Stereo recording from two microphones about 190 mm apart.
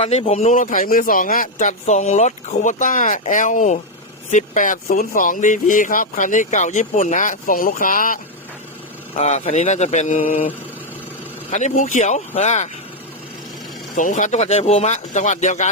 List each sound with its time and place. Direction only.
0.0 s speech: 35° left (ahead or behind)
11.5 s speech: 40° left (ahead or behind)
13.9 s speech: 45° left (ahead or behind)